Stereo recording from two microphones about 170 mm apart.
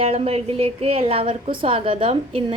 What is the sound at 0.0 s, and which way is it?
A woman's voice, 35° right (ahead or behind).